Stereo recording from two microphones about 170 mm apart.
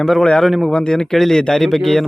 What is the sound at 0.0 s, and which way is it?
Speech, 5° left (ahead or behind).